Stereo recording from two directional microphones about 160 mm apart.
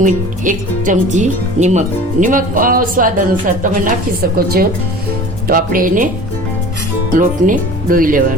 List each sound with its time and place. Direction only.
0.0 s speech: 55° right (ahead or behind)
7.2 s speech: 55° right (ahead or behind)